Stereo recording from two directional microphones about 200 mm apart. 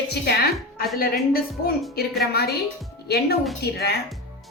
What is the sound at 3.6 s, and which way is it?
Speech, 55° left (ahead or behind).